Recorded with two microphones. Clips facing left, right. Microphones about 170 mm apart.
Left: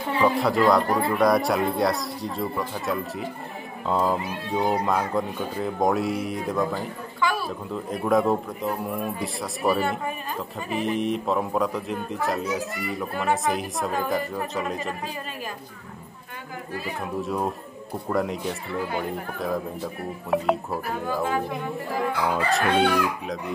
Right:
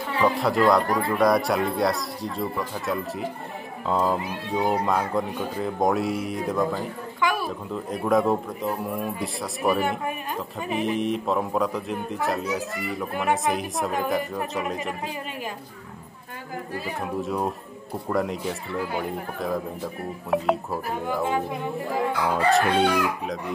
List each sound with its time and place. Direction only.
0.2 s speech: centre (ahead or behind)
7.2 s a sound: 15° right (ahead or behind)
7.7 s speech: centre (ahead or behind)
13.1 s speech: 20° right (ahead or behind)
13.5 s speech: centre (ahead or behind)
16.7 s speech: centre (ahead or behind)
21.0 s speech: 20° right (ahead or behind)
22.5 s speech: centre (ahead or behind)